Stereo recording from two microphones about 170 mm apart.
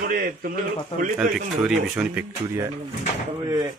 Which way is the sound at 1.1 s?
5° right (ahead or behind).